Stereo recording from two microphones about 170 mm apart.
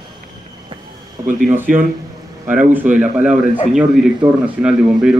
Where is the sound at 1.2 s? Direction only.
20° right (ahead or behind).